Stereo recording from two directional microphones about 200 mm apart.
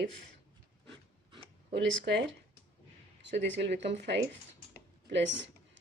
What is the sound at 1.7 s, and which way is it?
Speech, 60° right (ahead or behind).